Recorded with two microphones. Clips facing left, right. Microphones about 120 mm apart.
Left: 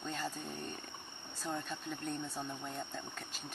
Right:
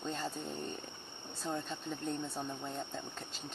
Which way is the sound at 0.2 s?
10° right (ahead or behind).